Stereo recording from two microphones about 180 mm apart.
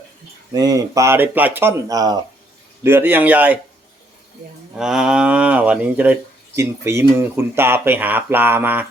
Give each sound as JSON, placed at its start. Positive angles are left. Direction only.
{"t": 0.5, "sound": "speech", "side_deg": -20}
{"t": 4.8, "sound": "speech", "side_deg": -5}